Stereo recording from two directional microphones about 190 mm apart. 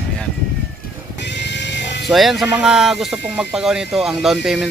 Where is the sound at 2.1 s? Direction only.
Centre (ahead or behind).